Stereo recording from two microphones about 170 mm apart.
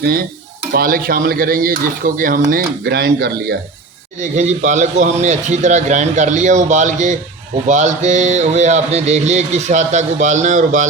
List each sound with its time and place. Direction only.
0.0 s speech: 60° right (ahead or behind)
4.2 s speech: 45° right (ahead or behind)